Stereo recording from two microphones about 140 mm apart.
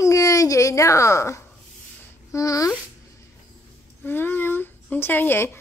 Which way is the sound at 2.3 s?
25° left (ahead or behind).